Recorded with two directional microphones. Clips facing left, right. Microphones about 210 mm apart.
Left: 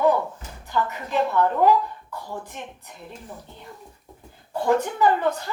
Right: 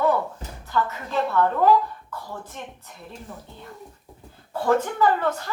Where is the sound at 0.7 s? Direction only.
15° left (ahead or behind).